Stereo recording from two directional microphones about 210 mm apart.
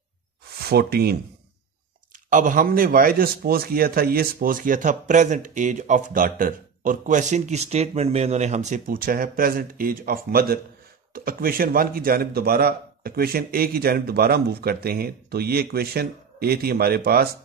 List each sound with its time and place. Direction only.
0.7 s a man's voice: 50° right (ahead or behind)
2.2 s a man's voice: 40° right (ahead or behind)